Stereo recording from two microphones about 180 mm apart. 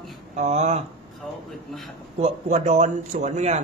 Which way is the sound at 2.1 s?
35° right (ahead or behind).